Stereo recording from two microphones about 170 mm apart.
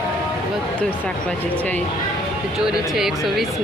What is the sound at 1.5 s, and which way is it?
Speech, 10° left (ahead or behind).